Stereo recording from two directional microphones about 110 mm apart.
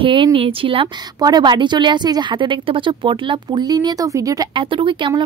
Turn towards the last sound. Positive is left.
turn(degrees=-50)  # may be behind; listen again after turning